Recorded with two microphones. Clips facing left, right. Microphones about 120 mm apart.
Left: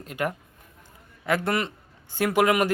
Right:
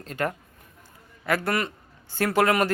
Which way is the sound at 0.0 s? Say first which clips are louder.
Even; 15° left (ahead or behind).